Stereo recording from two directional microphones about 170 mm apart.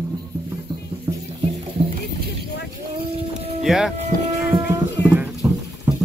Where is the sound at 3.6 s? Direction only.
Centre (ahead or behind).